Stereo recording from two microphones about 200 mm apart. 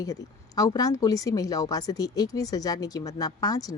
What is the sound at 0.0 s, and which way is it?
A woman's voice, 15° left (ahead or behind).